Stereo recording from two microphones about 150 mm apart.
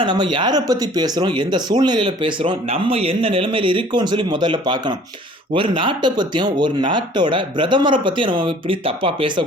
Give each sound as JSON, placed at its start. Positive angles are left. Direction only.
{"t": 0.0, "sound": "speech", "side_deg": -30}